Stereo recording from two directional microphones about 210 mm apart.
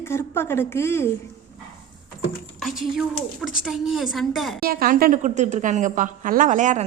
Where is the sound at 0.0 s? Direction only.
10° left (ahead or behind).